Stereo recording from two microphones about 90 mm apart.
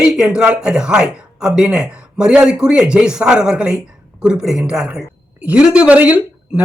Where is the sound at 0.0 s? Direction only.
10° right (ahead or behind).